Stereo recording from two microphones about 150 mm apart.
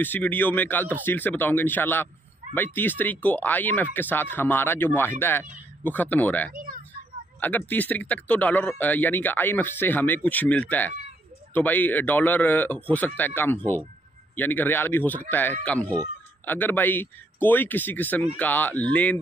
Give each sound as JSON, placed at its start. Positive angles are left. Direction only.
{"t": 0.0, "sound": "speech", "side_deg": 10}
{"t": 6.5, "sound": "a sound", "side_deg": -65}
{"t": 7.3, "sound": "speech", "side_deg": 10}